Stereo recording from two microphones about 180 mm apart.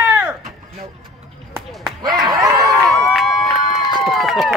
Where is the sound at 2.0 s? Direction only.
25° right (ahead or behind).